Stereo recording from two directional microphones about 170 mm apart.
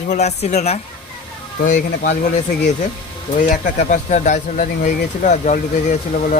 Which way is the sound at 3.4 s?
50° left (ahead or behind).